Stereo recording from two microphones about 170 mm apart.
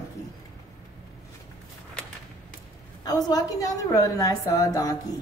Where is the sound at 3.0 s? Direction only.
20° left (ahead or behind).